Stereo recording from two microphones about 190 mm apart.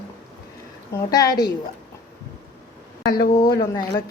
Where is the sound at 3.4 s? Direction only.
20° left (ahead or behind).